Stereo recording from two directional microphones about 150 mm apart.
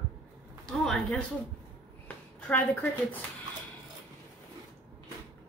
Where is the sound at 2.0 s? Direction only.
10° left (ahead or behind).